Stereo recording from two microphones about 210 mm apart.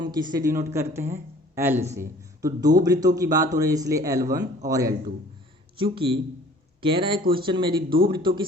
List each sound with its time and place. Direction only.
0.0 s speech: 20° right (ahead or behind)